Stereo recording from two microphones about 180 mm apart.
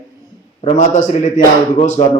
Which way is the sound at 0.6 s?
45° left (ahead or behind).